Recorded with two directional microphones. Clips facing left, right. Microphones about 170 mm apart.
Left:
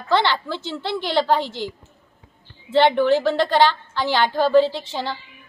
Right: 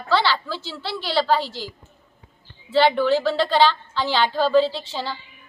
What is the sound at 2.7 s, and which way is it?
A woman's voice, 20° left (ahead or behind).